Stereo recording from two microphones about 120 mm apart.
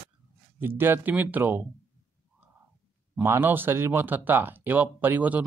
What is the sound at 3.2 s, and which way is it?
Speech, 20° right (ahead or behind).